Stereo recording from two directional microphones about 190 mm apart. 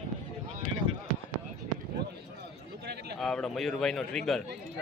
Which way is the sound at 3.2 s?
Centre (ahead or behind).